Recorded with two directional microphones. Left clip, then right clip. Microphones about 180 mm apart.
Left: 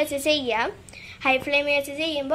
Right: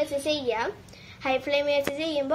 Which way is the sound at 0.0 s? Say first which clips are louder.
Left 3 dB; 10° left (ahead or behind).